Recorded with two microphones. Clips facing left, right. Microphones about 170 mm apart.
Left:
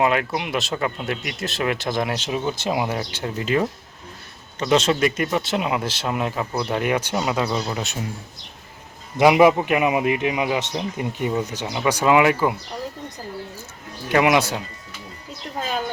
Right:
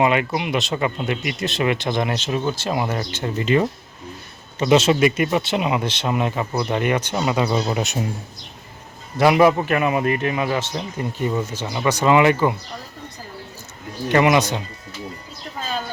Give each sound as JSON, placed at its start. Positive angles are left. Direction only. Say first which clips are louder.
{"t": 0.0, "sound": "speech", "louder": "right 2 dB", "side_deg": 0}
{"t": 7.6, "sound": "a man's voice", "louder": "right 4 dB", "side_deg": -15}
{"t": 9.1, "sound": "a man's voice", "louder": "left 1 dB", "side_deg": 15}
{"t": 14.1, "sound": "speech", "louder": "right 1 dB", "side_deg": 5}